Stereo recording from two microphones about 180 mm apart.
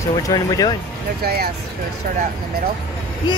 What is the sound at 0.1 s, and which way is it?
Speech, 20° left (ahead or behind).